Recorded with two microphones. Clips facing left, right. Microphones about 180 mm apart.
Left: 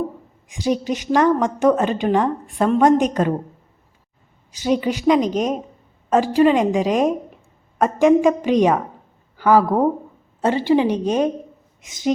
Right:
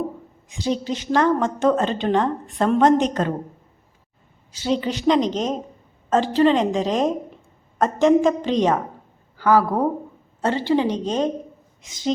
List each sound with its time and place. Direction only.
0.4 s a woman's voice: 15° left (ahead or behind)
4.5 s a woman's voice: 15° left (ahead or behind)